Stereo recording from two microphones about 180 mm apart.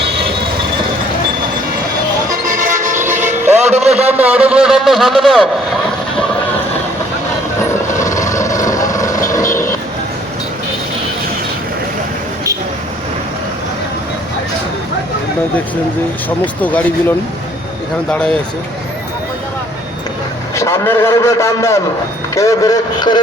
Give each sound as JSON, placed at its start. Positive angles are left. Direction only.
{"t": 2.5, "sound": "vehicle", "side_deg": -45}
{"t": 3.0, "sound": "vehicle", "side_deg": -10}
{"t": 3.6, "sound": "a sound", "side_deg": -35}
{"t": 4.1, "sound": "a man's voice", "side_deg": -10}
{"t": 7.6, "sound": "vehicle", "side_deg": 15}
{"t": 16.6, "sound": "a man's voice", "side_deg": 10}
{"t": 18.1, "sound": "a man's voice", "side_deg": 5}
{"t": 20.6, "sound": "a man's voice", "side_deg": 15}